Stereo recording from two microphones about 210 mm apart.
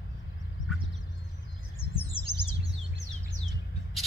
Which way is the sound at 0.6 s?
65° left (ahead or behind).